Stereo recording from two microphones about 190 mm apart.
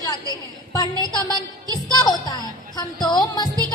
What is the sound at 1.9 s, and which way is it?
Music, 20° left (ahead or behind).